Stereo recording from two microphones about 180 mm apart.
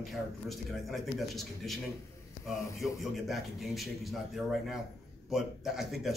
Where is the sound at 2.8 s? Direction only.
Centre (ahead or behind).